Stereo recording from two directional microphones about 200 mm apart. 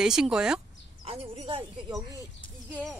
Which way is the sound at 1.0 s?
30° right (ahead or behind).